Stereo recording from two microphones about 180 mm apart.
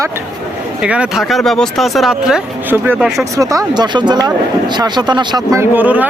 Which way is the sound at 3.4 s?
20° right (ahead or behind).